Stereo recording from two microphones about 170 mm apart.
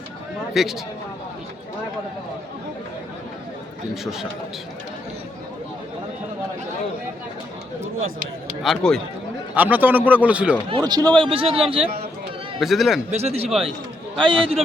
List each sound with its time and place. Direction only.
0.5 s speech: centre (ahead or behind)
8.6 s speech: centre (ahead or behind)
9.6 s a man's voice: 10° right (ahead or behind)
10.7 s speech: 25° right (ahead or behind)
11.2 s a man's voice: 30° right (ahead or behind)
12.5 s a man's voice: centre (ahead or behind)
13.1 s a man's voice: 40° right (ahead or behind)